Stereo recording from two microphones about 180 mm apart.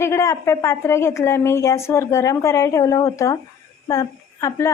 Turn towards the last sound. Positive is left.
turn(degrees=15)  # may be behind; listen again after turning